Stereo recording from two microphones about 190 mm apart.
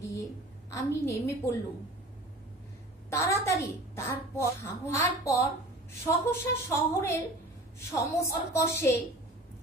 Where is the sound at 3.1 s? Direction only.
15° left (ahead or behind).